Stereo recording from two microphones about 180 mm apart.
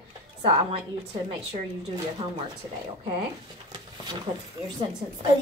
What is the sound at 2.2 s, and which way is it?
Speech, 30° right (ahead or behind).